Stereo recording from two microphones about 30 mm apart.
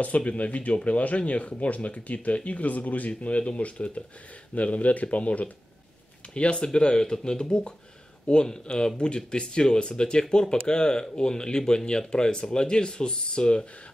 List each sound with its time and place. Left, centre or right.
0.2 s speech: left
0.5 s speech: left
4.6 s speech: left
6.3 s speech: left